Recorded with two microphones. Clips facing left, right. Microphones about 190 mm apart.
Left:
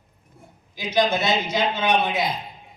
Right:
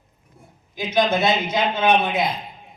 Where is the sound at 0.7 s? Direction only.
55° right (ahead or behind).